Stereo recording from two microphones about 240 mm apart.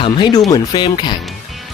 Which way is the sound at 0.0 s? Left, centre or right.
Centre.